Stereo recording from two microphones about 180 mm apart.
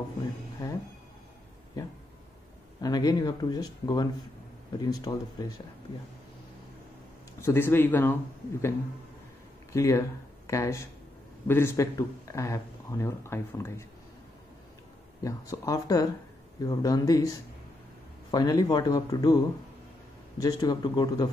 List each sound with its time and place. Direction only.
0.6 s speech: 20° left (ahead or behind)
2.8 s speech: 20° left (ahead or behind)
7.4 s speech: 10° left (ahead or behind)
15.2 s speech: 20° left (ahead or behind)
18.3 s speech: 20° left (ahead or behind)